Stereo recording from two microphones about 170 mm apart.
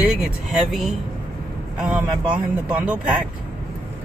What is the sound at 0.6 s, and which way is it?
Speech, centre (ahead or behind).